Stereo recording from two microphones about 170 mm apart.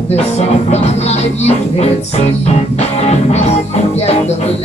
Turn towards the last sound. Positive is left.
turn(degrees=40)  # may be behind; listen again after turning